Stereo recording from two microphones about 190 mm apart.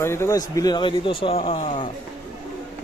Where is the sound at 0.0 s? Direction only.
15° left (ahead or behind).